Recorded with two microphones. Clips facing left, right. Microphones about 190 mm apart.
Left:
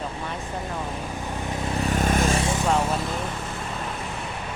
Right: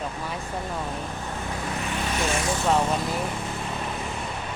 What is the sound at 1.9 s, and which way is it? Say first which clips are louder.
Vehicle: left 7 dB; 45° left (ahead or behind).